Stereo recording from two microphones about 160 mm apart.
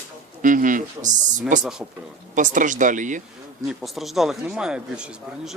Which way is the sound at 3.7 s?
Centre (ahead or behind).